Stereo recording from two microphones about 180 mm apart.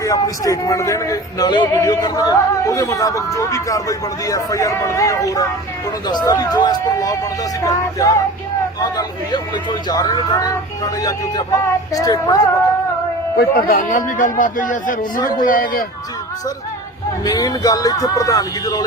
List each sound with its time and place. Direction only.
0.0 s speech: 20° left (ahead or behind)
13.3 s speech: 55° left (ahead or behind)
17.2 s speech: 20° left (ahead or behind)